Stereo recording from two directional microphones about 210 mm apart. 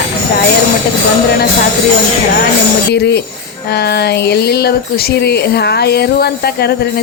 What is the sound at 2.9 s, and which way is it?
Speech, 50° left (ahead or behind).